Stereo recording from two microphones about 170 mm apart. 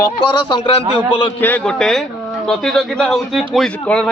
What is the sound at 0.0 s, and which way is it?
Speech, 25° left (ahead or behind).